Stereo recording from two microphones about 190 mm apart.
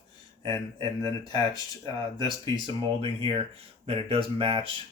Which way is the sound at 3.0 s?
30° right (ahead or behind).